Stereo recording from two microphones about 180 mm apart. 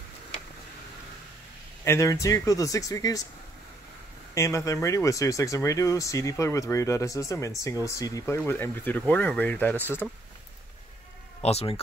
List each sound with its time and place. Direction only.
1.9 s speech: 15° left (ahead or behind)
4.4 s speech: 15° left (ahead or behind)
11.4 s speech: 35° left (ahead or behind)